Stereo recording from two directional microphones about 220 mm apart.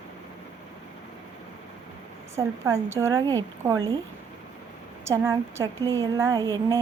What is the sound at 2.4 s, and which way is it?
A woman's voice, 10° right (ahead or behind).